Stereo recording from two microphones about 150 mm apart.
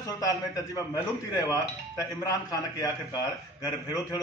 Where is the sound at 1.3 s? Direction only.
20° left (ahead or behind).